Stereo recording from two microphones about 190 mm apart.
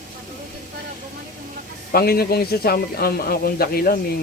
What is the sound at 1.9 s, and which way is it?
A man's voice, 55° left (ahead or behind).